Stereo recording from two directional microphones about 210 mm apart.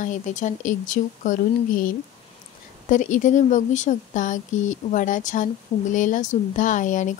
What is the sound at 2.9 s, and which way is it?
Speech, 40° left (ahead or behind).